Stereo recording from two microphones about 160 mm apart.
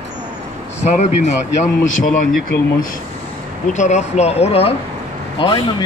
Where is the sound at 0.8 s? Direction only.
45° left (ahead or behind).